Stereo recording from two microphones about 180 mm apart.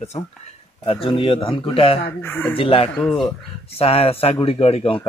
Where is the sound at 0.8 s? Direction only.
30° left (ahead or behind).